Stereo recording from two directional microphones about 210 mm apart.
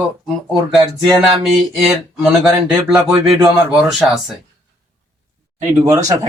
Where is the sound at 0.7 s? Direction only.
Centre (ahead or behind).